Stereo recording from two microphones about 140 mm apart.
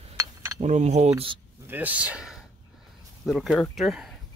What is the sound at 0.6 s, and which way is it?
Speech, 55° right (ahead or behind).